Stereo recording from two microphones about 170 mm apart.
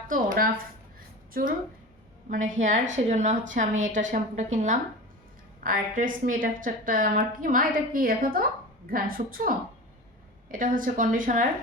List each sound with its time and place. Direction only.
0.1 s a woman's voice: 55° right (ahead or behind)